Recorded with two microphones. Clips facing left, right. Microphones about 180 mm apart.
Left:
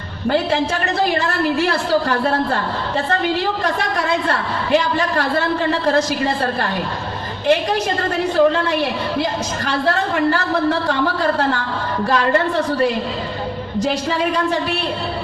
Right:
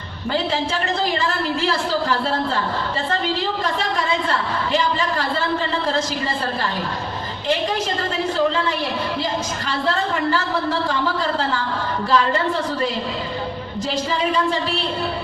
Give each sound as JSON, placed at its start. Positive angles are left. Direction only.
{"t": 0.3, "sound": "a woman's voice", "side_deg": 60}
{"t": 8.4, "sound": "a woman's voice", "side_deg": 60}